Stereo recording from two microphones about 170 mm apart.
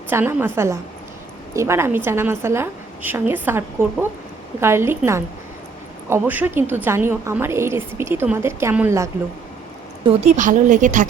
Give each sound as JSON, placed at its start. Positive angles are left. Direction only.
{"t": 0.1, "sound": "a woman's voice", "side_deg": -15}
{"t": 10.1, "sound": "speech", "side_deg": -40}